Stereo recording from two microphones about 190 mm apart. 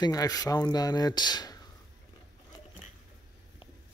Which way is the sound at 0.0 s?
20° left (ahead or behind).